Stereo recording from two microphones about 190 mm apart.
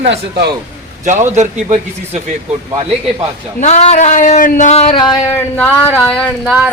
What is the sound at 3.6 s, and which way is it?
Speech, 35° left (ahead or behind).